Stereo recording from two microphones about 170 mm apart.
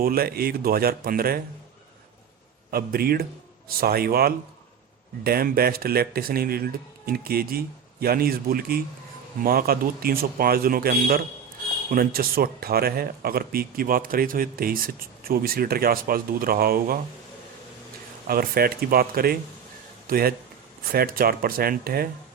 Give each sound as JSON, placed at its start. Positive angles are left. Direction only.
{"t": 0.0, "sound": "speech", "side_deg": -60}
{"t": 2.6, "sound": "speech", "side_deg": -60}
{"t": 18.3, "sound": "speech", "side_deg": -60}